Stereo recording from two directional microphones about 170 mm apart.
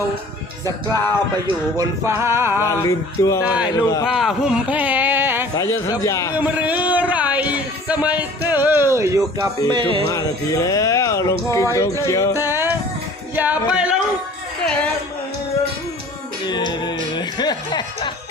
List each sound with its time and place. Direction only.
1.7 s speech: 20° right (ahead or behind)
2.6 s a sound: 20° left (ahead or behind)
3.4 s speech: 5° right (ahead or behind)
3.8 s speech: 20° left (ahead or behind)
4.0 s speech: centre (ahead or behind)
5.5 s speech: 20° left (ahead or behind)
6.4 s speech: 10° right (ahead or behind)
9.6 s speech: 30° right (ahead or behind)
10.1 s speech: 20° left (ahead or behind)
12.5 s music: 15° right (ahead or behind)
16.5 s music: 25° left (ahead or behind)